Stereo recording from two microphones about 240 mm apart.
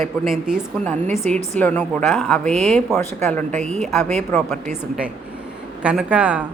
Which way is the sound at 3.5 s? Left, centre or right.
Right.